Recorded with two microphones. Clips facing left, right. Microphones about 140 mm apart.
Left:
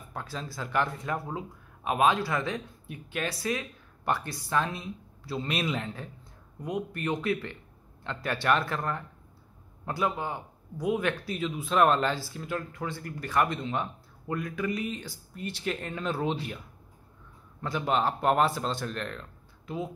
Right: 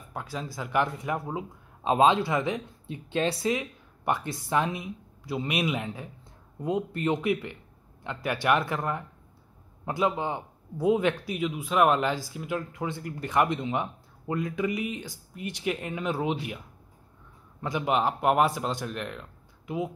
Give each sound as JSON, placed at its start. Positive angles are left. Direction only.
{"t": 0.1, "sound": "speech", "side_deg": -15}
{"t": 6.6, "sound": "speech", "side_deg": -25}